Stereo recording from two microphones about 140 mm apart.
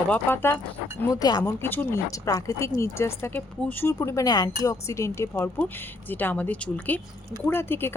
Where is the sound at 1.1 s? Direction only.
30° left (ahead or behind).